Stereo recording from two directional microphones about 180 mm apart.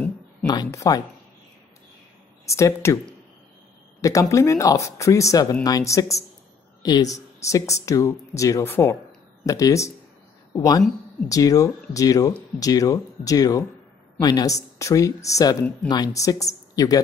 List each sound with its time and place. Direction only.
0.5 s speech: 20° left (ahead or behind)
2.5 s speech: 15° left (ahead or behind)
4.0 s speech: 20° left (ahead or behind)